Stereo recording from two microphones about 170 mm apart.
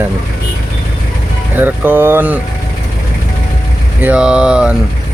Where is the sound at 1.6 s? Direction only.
10° right (ahead or behind).